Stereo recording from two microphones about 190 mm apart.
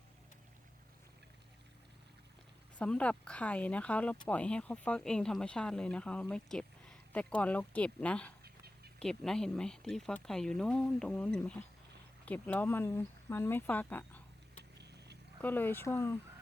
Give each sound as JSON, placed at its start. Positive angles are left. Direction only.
{"t": 2.7, "sound": "speech", "side_deg": 5}
{"t": 14.8, "sound": "a sound", "side_deg": -60}
{"t": 15.4, "sound": "speech", "side_deg": 10}